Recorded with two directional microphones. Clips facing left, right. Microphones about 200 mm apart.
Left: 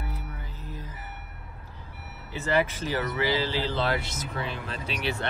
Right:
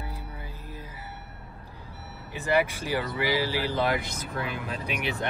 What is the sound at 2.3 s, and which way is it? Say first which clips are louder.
Speech: right 1 dB; 15° right (ahead or behind).